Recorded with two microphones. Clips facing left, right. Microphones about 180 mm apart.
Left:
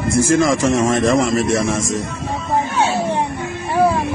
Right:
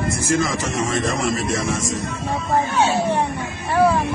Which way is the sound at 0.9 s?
45° left (ahead or behind).